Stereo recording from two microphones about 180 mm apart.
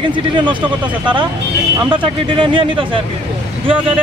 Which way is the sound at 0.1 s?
25° right (ahead or behind).